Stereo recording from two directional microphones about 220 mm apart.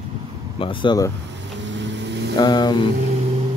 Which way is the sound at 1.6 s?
55° right (ahead or behind).